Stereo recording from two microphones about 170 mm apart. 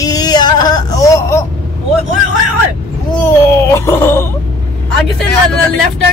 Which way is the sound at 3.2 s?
15° left (ahead or behind).